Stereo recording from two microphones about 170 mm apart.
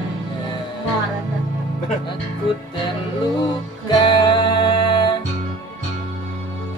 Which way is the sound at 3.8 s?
30° left (ahead or behind).